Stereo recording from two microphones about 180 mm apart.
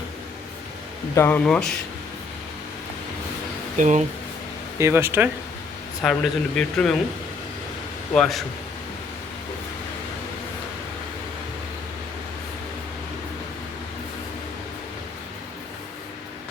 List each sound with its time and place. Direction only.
1.1 s speech: 10° left (ahead or behind)
3.8 s speech: 45° right (ahead or behind)
4.8 s speech: 15° right (ahead or behind)
6.0 s speech: centre (ahead or behind)
8.1 s speech: centre (ahead or behind)